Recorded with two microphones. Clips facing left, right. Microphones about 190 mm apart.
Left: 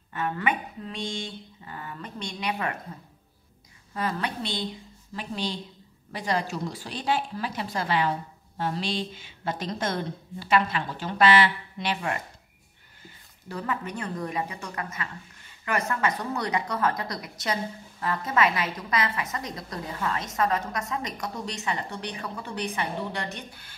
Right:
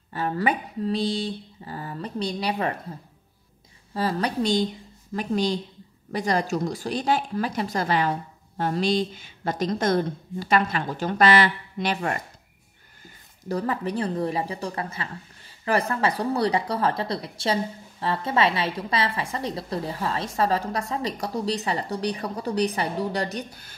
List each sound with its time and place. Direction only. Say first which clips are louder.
0.1 s a woman's voice: right 3 dB; 35° right (ahead or behind)
3.9 s a woman's voice: right 5 dB; 35° right (ahead or behind)
13.5 s a woman's voice: right 6 dB; 35° right (ahead or behind)